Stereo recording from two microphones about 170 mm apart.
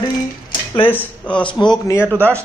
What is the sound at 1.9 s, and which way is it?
Speech, 10° left (ahead or behind).